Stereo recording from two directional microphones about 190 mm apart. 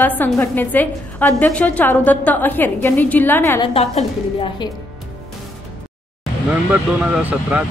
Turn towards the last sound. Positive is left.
turn(degrees=-5)  # may be behind; listen again after turning